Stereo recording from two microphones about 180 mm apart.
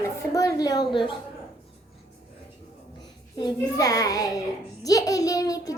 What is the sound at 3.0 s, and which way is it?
A child's voice, 25° left (ahead or behind).